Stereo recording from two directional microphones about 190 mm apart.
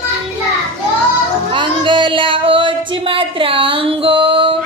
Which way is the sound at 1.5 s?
25° right (ahead or behind).